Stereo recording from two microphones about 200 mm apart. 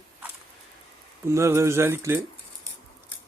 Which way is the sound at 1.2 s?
15° right (ahead or behind).